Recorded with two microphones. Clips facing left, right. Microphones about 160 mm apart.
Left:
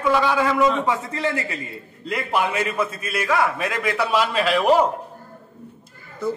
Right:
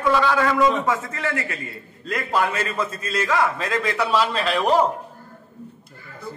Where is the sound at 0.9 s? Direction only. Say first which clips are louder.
Left 1 dB; 30° left (ahead or behind).